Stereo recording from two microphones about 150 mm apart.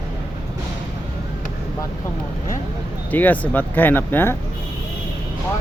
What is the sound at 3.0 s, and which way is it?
Speech, 10° left (ahead or behind).